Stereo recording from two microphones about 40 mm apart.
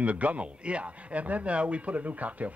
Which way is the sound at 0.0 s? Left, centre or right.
Right.